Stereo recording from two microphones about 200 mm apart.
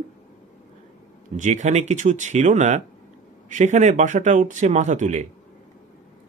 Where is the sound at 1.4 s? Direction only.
35° right (ahead or behind).